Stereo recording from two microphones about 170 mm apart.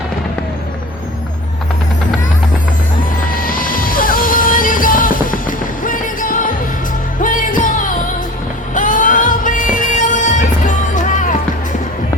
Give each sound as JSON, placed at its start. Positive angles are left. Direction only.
{"t": 3.2, "sound": "music", "side_deg": 55}